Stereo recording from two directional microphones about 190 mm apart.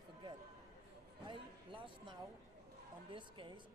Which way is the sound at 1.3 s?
25° right (ahead or behind).